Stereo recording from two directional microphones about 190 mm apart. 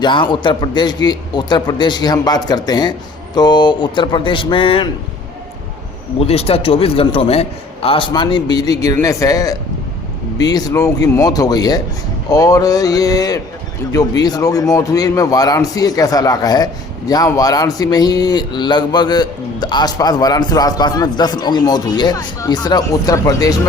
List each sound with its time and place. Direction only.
0.0 s a man's voice: 25° left (ahead or behind)
6.1 s a man's voice: 30° left (ahead or behind)